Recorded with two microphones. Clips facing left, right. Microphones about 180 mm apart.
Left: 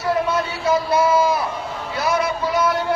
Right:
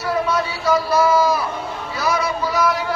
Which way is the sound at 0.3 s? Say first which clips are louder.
Right 1 dB; 25° left (ahead or behind).